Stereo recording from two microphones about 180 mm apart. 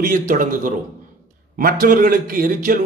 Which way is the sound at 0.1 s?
50° right (ahead or behind).